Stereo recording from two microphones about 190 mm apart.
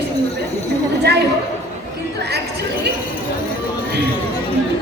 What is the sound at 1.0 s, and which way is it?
Speech, 60° right (ahead or behind).